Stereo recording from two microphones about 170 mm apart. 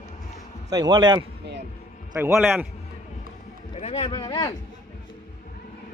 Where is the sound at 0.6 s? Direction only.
25° right (ahead or behind).